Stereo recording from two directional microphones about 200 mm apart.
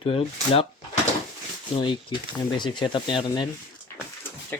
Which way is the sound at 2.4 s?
20° left (ahead or behind).